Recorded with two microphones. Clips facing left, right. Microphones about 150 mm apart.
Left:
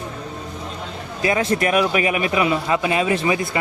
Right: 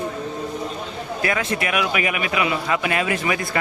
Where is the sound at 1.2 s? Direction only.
25° left (ahead or behind).